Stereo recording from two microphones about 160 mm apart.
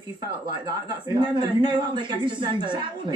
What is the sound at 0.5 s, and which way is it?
A man's voice, 25° right (ahead or behind).